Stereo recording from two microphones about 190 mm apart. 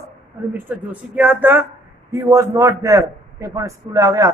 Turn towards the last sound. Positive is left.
turn(degrees=-20)  # may be behind; listen again after turning